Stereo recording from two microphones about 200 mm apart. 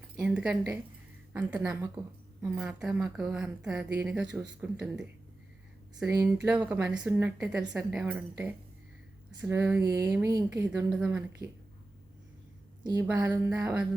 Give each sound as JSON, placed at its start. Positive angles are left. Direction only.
{"t": 0.2, "sound": "a woman's voice", "side_deg": -5}
{"t": 6.1, "sound": "a woman's voice", "side_deg": -5}
{"t": 12.8, "sound": "a woman's voice", "side_deg": -20}